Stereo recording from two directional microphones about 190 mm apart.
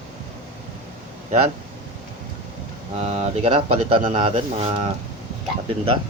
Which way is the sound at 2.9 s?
35° right (ahead or behind).